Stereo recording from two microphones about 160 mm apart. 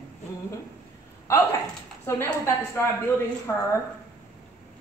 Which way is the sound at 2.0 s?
15° left (ahead or behind).